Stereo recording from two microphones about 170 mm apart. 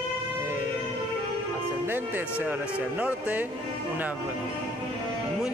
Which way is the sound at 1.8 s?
10° right (ahead or behind).